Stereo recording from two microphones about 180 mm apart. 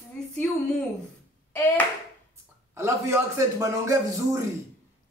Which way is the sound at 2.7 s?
15° right (ahead or behind).